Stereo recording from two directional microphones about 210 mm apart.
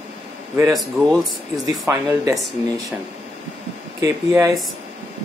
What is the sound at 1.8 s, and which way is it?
Speech, 15° right (ahead or behind).